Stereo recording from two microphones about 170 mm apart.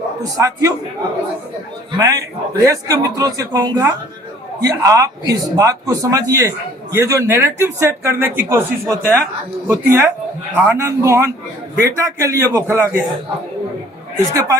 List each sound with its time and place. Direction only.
0.2 s speech: 20° right (ahead or behind)
2.0 s speech: 20° right (ahead or behind)
14.3 s speech: 20° right (ahead or behind)